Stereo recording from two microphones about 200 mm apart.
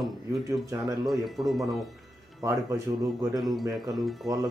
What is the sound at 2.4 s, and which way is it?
Speech, 15° right (ahead or behind).